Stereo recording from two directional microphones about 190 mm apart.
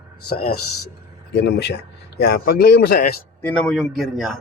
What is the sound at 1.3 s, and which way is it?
A man's voice, 60° left (ahead or behind).